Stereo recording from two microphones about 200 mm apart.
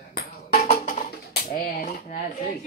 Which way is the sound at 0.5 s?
35° left (ahead or behind).